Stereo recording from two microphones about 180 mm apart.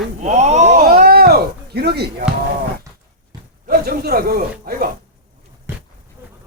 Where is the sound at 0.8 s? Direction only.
55° right (ahead or behind).